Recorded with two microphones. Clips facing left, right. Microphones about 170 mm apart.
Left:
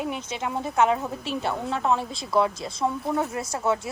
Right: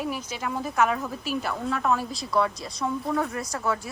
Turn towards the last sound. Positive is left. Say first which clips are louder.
# left 3 dB
turn(degrees=25)  # may be behind; listen again after turning